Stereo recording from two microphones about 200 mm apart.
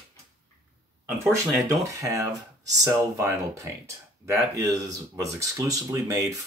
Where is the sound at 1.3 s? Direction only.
15° right (ahead or behind).